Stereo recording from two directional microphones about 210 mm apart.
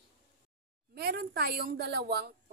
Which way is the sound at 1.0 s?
50° right (ahead or behind).